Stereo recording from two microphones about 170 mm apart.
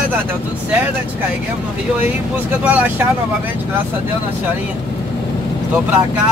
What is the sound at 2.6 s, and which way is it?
Speech, 10° right (ahead or behind).